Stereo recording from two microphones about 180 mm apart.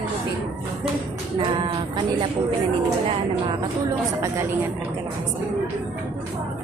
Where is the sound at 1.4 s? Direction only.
25° right (ahead or behind).